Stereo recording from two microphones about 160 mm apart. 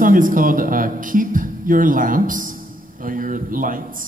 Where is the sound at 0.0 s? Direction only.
55° right (ahead or behind).